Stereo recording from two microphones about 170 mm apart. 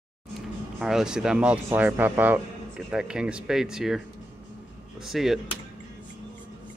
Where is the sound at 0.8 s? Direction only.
5° right (ahead or behind).